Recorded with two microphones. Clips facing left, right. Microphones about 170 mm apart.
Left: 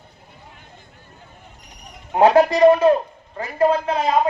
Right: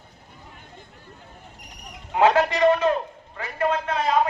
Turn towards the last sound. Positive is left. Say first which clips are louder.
# left 4 dB
turn(degrees=30)  # may be behind; listen again after turning